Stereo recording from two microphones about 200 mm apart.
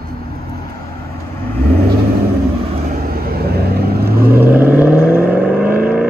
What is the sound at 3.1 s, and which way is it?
Vehicle, 50° right (ahead or behind).